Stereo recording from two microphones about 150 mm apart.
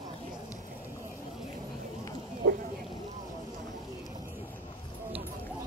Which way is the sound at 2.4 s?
90° right.